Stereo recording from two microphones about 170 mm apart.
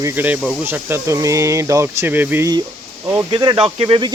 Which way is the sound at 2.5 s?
20° right (ahead or behind).